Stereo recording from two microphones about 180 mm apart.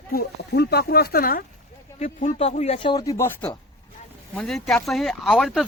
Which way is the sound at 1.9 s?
40° left (ahead or behind).